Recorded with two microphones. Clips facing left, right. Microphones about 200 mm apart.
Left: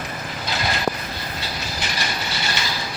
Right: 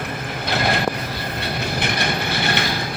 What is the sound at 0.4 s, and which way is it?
Vehicle, 60° right (ahead or behind).